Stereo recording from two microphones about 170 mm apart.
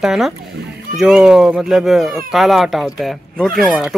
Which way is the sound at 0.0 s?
Centre (ahead or behind).